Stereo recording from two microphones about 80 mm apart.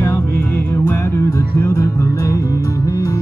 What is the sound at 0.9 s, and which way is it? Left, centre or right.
Music, left.